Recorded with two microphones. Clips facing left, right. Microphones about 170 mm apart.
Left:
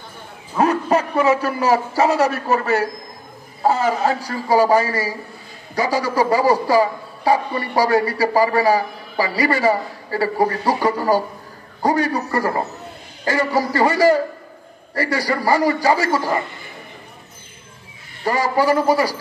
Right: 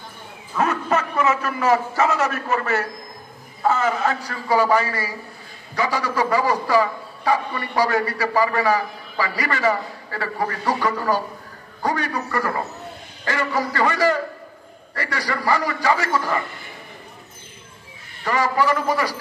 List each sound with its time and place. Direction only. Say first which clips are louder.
0.6 s a man's voice: left 4 dB; 35° left (ahead or behind)
18.2 s a man's voice: left 3 dB; 35° left (ahead or behind)